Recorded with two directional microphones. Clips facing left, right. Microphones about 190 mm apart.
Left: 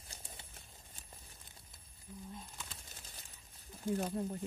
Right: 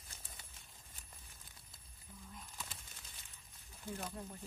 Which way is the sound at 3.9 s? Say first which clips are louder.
Left 10 dB; 35° left (ahead or behind).